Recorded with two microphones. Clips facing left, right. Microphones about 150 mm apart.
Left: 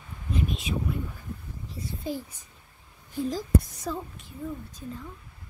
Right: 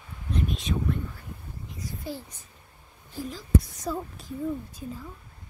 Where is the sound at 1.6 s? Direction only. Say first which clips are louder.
Left 2 dB; 30° left (ahead or behind).